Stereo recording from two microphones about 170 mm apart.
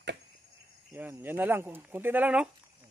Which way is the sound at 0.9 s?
10° right (ahead or behind).